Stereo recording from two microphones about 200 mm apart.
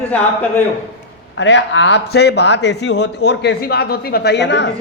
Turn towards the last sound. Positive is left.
turn(degrees=60)  # may be behind; listen again after turning